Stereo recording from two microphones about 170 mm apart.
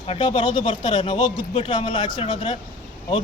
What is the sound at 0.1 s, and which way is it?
Speech, 30° left (ahead or behind).